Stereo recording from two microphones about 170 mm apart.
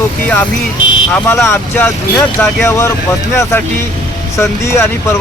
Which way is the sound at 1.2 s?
15° left (ahead or behind).